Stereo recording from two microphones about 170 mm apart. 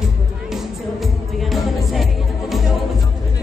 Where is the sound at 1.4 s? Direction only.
Centre (ahead or behind).